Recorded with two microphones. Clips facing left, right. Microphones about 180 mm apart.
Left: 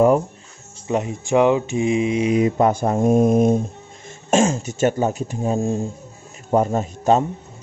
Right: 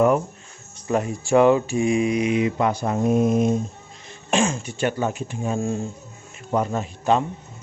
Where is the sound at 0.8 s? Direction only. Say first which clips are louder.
Left 1 dB; 20° left (ahead or behind).